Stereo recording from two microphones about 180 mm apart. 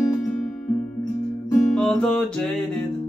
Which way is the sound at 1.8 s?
5° left (ahead or behind).